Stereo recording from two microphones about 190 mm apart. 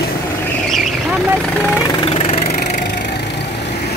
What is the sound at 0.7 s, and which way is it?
Vehicle, centre (ahead or behind).